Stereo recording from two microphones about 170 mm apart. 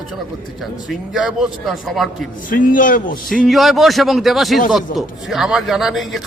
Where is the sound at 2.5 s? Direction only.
55° left (ahead or behind).